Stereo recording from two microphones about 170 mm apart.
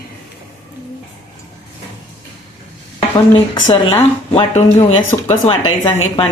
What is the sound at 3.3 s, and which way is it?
A woman's voice, 30° left (ahead or behind).